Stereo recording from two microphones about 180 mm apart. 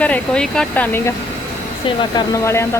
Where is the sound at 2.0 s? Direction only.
20° left (ahead or behind).